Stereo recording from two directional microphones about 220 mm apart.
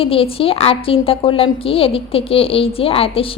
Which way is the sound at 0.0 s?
25° left (ahead or behind).